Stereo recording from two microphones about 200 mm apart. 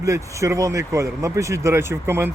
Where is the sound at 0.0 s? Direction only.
15° right (ahead or behind).